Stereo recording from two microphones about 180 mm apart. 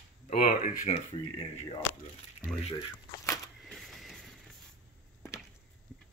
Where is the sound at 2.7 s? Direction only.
15° left (ahead or behind).